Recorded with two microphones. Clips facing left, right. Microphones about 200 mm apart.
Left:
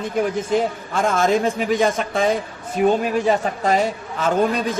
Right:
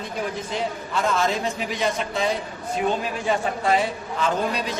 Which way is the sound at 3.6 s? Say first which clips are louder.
Left 3 dB; 45° left (ahead or behind).